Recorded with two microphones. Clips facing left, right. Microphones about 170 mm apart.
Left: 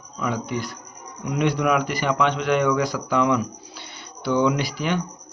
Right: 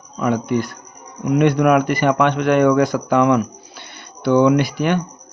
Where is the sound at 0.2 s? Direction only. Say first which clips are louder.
Right 7 dB; 55° right (ahead or behind).